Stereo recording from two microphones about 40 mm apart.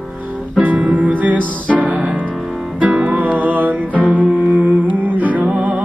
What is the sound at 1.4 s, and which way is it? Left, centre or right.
Music, left.